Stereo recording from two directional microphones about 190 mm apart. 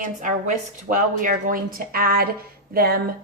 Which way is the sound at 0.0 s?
45° right (ahead or behind).